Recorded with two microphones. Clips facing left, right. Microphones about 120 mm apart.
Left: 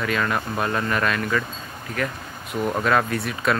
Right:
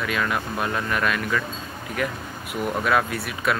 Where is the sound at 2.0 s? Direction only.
15° right (ahead or behind).